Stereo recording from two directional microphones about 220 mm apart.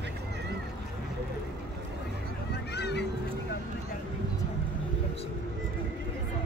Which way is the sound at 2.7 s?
50° left (ahead or behind).